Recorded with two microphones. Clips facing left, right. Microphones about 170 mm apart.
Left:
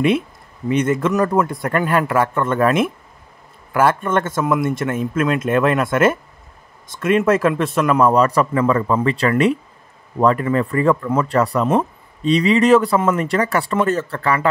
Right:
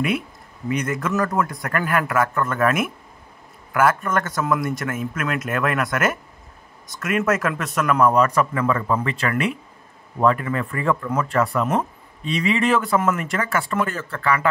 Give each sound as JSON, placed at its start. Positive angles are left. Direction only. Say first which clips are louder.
{"t": 0.7, "sound": "speech", "louder": "left 6 dB", "side_deg": 25}